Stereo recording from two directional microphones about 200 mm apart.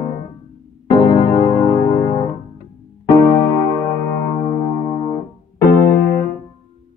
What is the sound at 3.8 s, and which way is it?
Music, 15° left (ahead or behind).